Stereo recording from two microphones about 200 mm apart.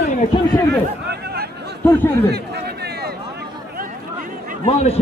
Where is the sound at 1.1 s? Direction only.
55° right (ahead or behind).